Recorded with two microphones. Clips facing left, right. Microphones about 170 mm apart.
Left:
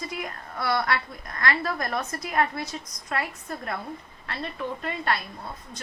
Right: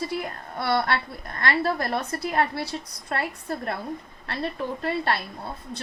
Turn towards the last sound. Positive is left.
turn(degrees=-30)  # may be behind; listen again after turning